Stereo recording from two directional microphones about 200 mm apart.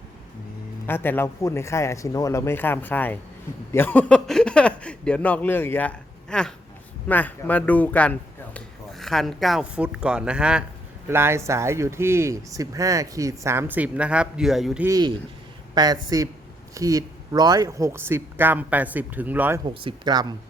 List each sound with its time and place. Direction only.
0.9 s speech: 10° left (ahead or behind)
14.8 s speech: 20° right (ahead or behind)
19.6 s speech: 25° right (ahead or behind)